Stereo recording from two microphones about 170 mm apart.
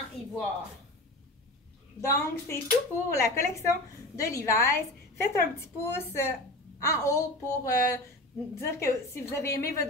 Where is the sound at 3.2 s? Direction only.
15° left (ahead or behind).